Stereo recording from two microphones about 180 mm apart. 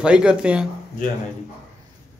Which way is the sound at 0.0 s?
5° right (ahead or behind).